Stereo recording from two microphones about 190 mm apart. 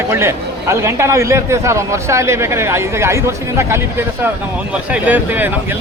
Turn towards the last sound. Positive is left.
turn(degrees=-10)  # may be behind; listen again after turning